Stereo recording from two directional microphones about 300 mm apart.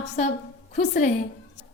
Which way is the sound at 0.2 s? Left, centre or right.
Left.